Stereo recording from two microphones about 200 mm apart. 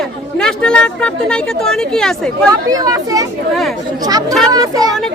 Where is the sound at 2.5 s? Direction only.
15° right (ahead or behind).